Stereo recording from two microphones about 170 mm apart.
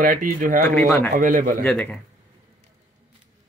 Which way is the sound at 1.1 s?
50° right (ahead or behind).